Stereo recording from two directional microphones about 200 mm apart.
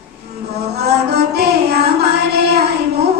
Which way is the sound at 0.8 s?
55° right (ahead or behind).